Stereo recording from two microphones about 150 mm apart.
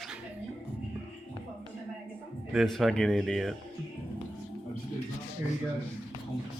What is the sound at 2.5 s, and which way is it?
Speech, centre (ahead or behind).